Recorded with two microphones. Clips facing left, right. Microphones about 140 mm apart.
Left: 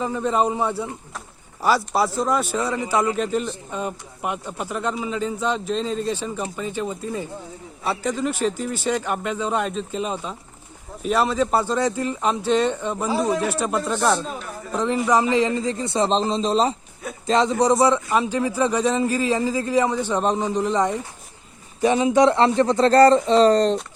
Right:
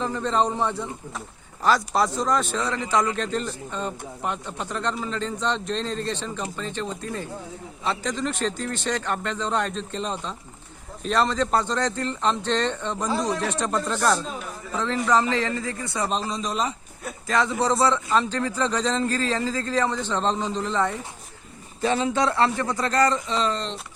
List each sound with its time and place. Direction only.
0.0 s a man's voice: 10° left (ahead or behind)
14.7 s a man's voice: 15° left (ahead or behind)
22.9 s speech: 35° left (ahead or behind)